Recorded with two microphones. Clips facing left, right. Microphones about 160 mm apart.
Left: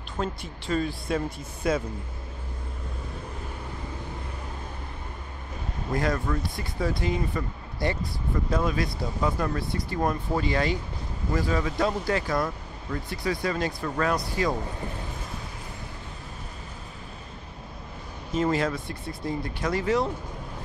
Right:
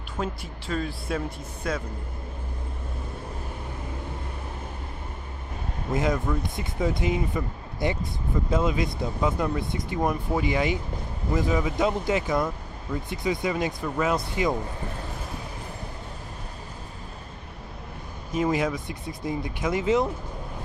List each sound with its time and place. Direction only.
0.2 s speech: centre (ahead or behind)
5.9 s speech: 15° right (ahead or behind)
18.3 s speech: 15° right (ahead or behind)